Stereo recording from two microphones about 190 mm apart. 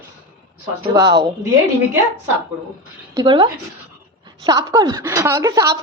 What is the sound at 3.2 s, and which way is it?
A woman's voice, 25° right (ahead or behind).